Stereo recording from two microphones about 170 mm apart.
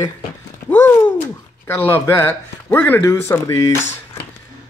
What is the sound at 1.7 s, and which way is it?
Speech, 15° left (ahead or behind).